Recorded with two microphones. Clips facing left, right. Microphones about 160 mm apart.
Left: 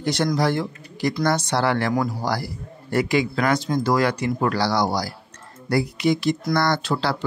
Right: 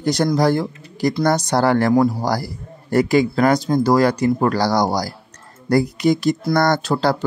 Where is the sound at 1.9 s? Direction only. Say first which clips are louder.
Right 7 dB; 30° right (ahead or behind).